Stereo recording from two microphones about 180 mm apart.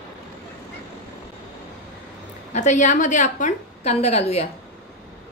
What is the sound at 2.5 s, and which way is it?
A woman's voice, 40° left (ahead or behind).